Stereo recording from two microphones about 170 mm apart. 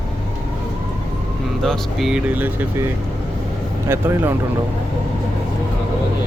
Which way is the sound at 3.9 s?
15° right (ahead or behind).